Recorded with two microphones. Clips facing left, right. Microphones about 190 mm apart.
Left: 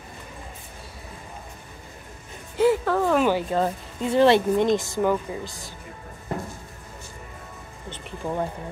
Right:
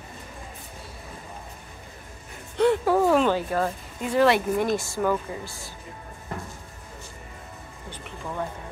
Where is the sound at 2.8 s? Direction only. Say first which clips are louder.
Right 2 dB; 10° right (ahead or behind).